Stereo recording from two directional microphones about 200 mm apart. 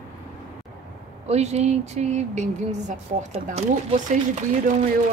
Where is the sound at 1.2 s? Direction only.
35° right (ahead or behind).